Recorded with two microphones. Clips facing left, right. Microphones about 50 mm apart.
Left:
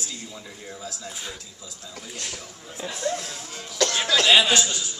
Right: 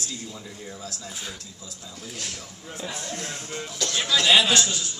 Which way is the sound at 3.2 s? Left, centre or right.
Right.